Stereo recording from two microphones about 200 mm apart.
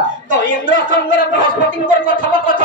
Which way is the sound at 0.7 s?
40° right (ahead or behind).